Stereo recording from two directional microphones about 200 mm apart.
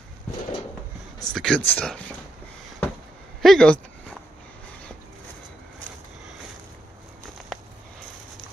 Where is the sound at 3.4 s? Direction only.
5° left (ahead or behind).